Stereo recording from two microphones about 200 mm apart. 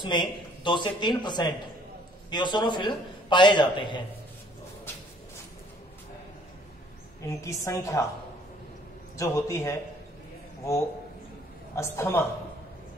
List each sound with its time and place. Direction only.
0.0 s a man's voice: 25° left (ahead or behind)
7.2 s a woman's voice: 15° left (ahead or behind)
9.1 s a woman's voice: 15° left (ahead or behind)